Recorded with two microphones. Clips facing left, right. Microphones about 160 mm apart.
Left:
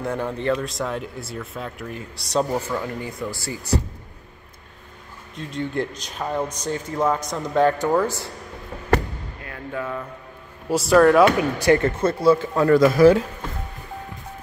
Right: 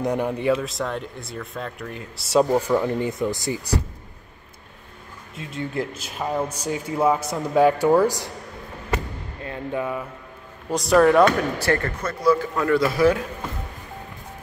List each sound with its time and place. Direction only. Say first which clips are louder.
0.0 s speech: right 2 dB; 15° right (ahead or behind)
2.8 s speech: right 6 dB; 20° right (ahead or behind)
5.3 s speech: left 2 dB; 5° right (ahead or behind)
9.4 s speech: right 4 dB; 25° right (ahead or behind)
10.7 s speech: left 1 dB; centre (ahead or behind)
11.2 s speech: left 3 dB; 15° left (ahead or behind)
12.0 s a man's voice: left 3 dB; 30° left (ahead or behind)
12.7 s speech: left 5 dB; 45° left (ahead or behind)